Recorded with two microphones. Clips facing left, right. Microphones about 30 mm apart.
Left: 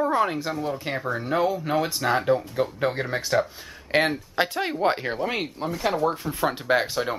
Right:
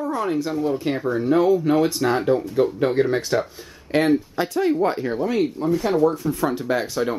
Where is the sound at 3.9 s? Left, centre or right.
Left.